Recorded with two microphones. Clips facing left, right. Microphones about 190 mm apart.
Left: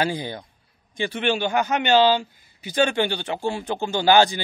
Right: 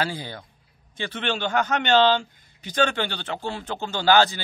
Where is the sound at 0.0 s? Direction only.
15° left (ahead or behind).